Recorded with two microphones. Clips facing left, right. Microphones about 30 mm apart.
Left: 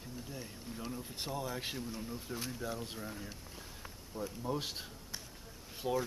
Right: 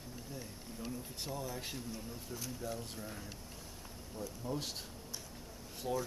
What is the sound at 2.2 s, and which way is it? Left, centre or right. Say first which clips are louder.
Speech: left 1 dB; left.